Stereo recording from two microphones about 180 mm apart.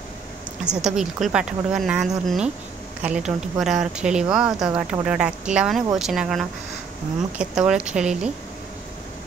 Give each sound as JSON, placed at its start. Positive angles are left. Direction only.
{"t": 0.8, "sound": "speech", "side_deg": -5}